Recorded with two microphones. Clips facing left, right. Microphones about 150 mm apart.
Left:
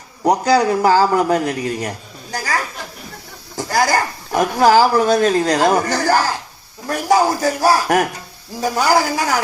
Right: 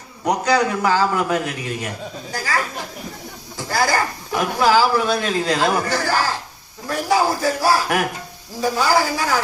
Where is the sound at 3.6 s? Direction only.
40° left (ahead or behind).